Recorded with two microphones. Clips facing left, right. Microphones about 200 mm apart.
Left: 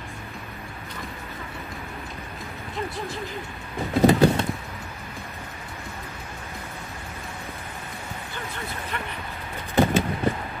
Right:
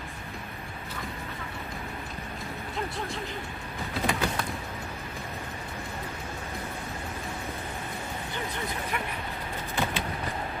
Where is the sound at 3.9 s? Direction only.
35° left (ahead or behind).